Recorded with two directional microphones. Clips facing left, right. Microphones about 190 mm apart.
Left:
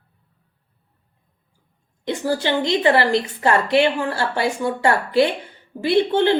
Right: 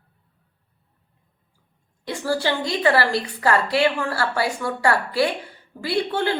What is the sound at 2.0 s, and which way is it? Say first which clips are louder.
Speech: left 2 dB; 20° left (ahead or behind).